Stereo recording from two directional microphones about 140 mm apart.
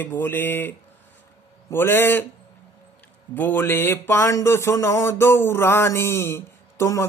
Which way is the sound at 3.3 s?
15° left (ahead or behind).